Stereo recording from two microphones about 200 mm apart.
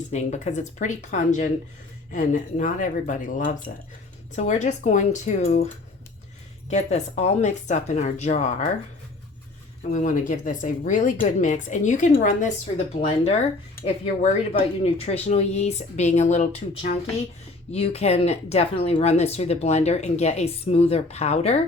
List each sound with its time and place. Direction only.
0.1 s speech: 35° left (ahead or behind)
6.7 s speech: 35° left (ahead or behind)
9.9 s speech: 40° left (ahead or behind)